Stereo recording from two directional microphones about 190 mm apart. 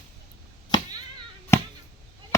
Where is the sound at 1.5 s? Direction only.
15° left (ahead or behind).